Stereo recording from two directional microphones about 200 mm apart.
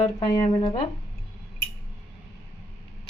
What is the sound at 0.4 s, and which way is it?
Speech, 30° left (ahead or behind).